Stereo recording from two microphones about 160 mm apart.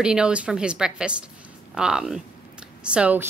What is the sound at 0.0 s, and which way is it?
A woman's voice, 5° right (ahead or behind).